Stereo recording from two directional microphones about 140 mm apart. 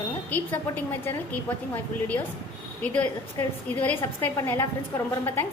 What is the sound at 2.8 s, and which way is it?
A woman's voice, 10° left (ahead or behind).